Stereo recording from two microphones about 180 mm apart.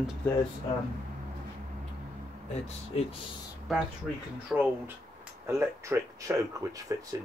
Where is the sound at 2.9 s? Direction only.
35° left (ahead or behind).